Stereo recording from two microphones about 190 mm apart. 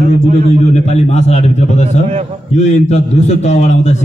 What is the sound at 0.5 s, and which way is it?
A man's voice, 35° left (ahead or behind).